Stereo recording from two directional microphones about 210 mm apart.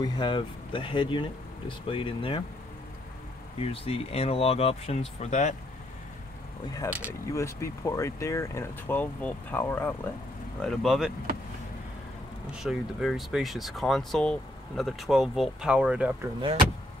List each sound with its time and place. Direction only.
0.0 s speech: 20° left (ahead or behind)
3.6 s speech: 25° left (ahead or behind)
6.7 s speech: 15° left (ahead or behind)
12.5 s speech: centre (ahead or behind)